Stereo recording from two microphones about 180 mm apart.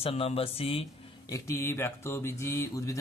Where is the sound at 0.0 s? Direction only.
35° left (ahead or behind).